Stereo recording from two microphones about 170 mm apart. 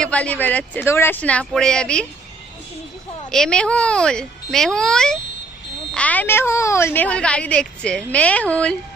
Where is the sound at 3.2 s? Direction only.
5° left (ahead or behind).